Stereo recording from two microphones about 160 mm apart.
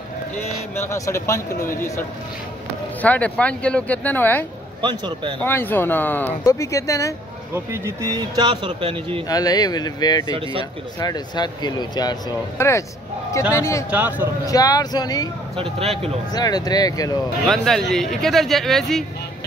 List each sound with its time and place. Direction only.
0.7 s speech: 20° left (ahead or behind)
4.8 s speech: 30° right (ahead or behind)
5.4 s speech: 10° left (ahead or behind)
7.5 s speech: 15° right (ahead or behind); by 9.2 s 35° right (ahead or behind)
9.3 s speech: 25° left (ahead or behind)
10.3 s speech: 35° right (ahead or behind)
11.0 s speech: 25° left (ahead or behind)
13.8 s a man's voice: 10° right (ahead or behind)
14.4 s speech: 20° left (ahead or behind)
15.5 s speech: 35° right (ahead or behind)
16.3 s speech: 25° left (ahead or behind)
17.5 s speech: centre (ahead or behind)